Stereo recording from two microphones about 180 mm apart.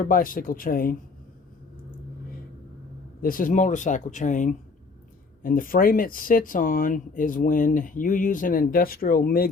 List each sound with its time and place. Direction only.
0.0 s speech: 50° left (ahead or behind)
3.2 s speech: 50° left (ahead or behind)